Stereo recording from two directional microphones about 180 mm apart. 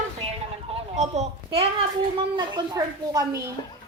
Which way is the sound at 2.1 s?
25° right (ahead or behind).